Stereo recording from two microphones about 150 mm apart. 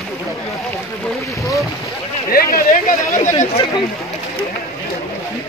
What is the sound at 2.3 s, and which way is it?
Speech, 75° left (ahead or behind).